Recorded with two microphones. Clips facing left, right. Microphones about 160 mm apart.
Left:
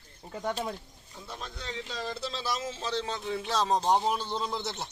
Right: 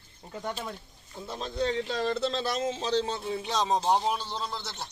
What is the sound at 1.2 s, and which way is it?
Speech, 25° right (ahead or behind).